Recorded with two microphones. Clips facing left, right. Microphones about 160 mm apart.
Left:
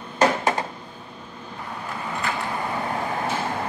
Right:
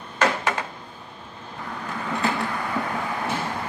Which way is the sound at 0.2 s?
35° left (ahead or behind).